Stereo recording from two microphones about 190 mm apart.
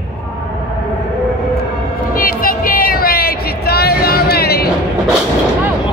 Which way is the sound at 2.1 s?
50° left (ahead or behind).